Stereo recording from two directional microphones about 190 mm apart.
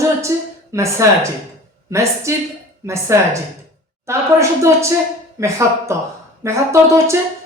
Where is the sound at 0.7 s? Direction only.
15° right (ahead or behind).